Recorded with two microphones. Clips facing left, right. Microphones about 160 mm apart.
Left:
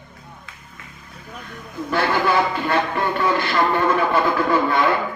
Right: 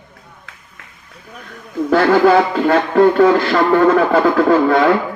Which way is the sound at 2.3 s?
90° right.